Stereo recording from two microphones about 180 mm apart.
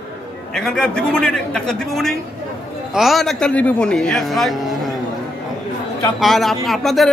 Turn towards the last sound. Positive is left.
turn(degrees=0)  # may be behind; listen again after turning